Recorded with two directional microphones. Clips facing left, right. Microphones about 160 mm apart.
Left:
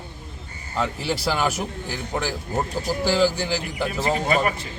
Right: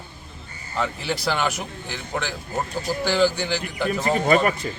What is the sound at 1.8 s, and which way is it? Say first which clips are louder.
Speech: even; 35° left (ahead or behind).